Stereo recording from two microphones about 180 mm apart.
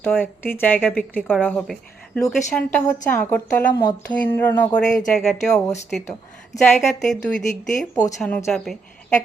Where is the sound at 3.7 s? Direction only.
25° left (ahead or behind).